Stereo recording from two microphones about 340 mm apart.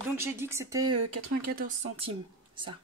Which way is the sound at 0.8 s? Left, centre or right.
Right.